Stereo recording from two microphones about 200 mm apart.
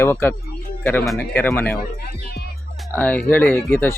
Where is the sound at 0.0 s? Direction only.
10° left (ahead or behind).